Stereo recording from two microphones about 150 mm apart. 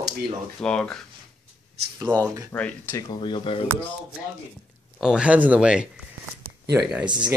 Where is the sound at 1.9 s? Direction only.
30° right (ahead or behind).